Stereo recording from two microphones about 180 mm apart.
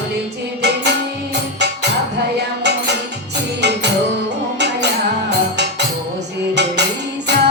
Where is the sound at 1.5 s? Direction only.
70° right (ahead or behind).